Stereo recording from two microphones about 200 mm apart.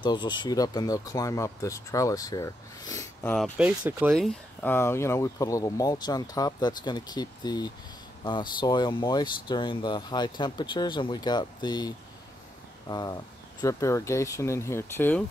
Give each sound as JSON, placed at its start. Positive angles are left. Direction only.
{"t": 0.0, "sound": "speech", "side_deg": 20}
{"t": 3.5, "sound": "speech", "side_deg": -10}